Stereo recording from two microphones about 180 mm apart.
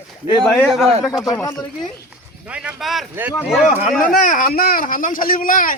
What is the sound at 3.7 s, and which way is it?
A man's voice, 40° left (ahead or behind).